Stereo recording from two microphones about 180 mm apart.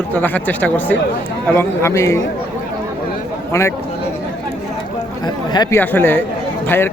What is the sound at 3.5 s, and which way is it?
Speech, 15° left (ahead or behind).